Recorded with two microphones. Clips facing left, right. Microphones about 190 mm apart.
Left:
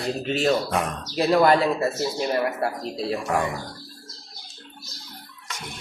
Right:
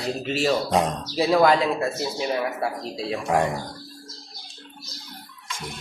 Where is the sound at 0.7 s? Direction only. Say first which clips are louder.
Right 4 dB; 20° right (ahead or behind).